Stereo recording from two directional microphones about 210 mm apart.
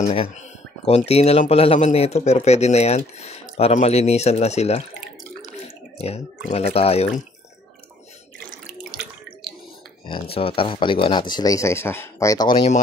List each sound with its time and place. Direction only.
0.0 s speech: 25° left (ahead or behind)
5.9 s speech: 30° left (ahead or behind)
10.3 s speech: 25° left (ahead or behind)